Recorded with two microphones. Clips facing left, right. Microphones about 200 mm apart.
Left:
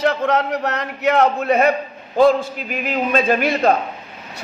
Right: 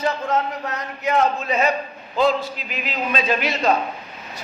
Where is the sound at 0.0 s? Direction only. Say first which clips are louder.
Left 4 dB; 70° left (ahead or behind).